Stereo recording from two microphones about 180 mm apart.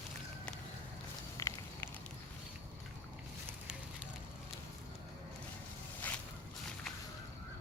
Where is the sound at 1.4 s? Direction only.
15° left (ahead or behind).